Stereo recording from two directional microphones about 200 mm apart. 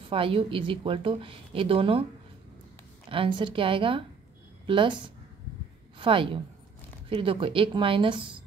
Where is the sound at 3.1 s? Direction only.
25° right (ahead or behind).